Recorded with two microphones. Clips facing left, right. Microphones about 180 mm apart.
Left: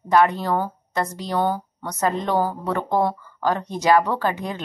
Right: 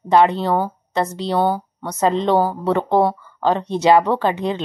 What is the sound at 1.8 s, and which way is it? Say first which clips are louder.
Speech: right 5 dB; 25° right (ahead or behind).